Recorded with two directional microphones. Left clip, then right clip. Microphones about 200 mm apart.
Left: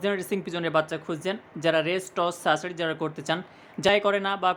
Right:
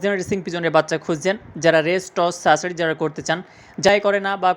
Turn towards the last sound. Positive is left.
turn(degrees=-15)  # may be behind; listen again after turning